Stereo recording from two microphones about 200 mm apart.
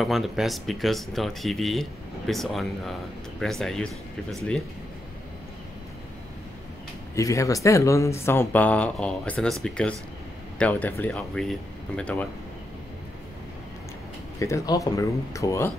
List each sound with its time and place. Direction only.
0.0 s speech: centre (ahead or behind)
7.2 s speech: 15° left (ahead or behind)
14.4 s speech: 15° left (ahead or behind)